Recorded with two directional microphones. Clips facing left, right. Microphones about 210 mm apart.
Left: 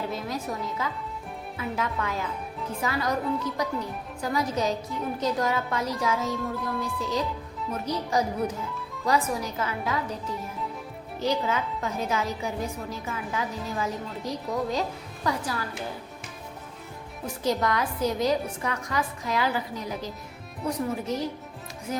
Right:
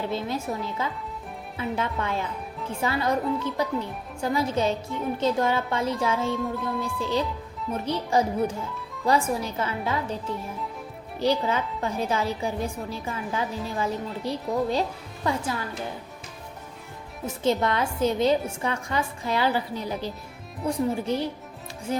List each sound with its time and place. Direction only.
0.1 s a woman's voice: 25° right (ahead or behind)
6.3 s music: centre (ahead or behind)
7.7 s a woman's voice: 30° right (ahead or behind)
11.2 s a woman's voice: 30° right (ahead or behind)
17.2 s a woman's voice: 25° right (ahead or behind)